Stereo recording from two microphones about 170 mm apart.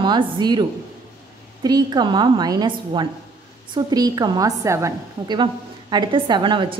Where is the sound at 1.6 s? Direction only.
25° right (ahead or behind).